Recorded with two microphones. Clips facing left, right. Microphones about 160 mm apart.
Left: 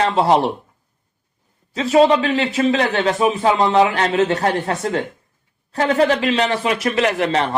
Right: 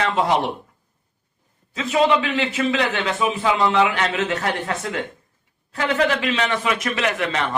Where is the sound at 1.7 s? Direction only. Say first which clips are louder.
Left 5 dB; 35° left (ahead or behind).